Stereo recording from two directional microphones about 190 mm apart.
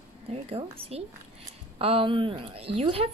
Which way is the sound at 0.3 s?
30° right (ahead or behind).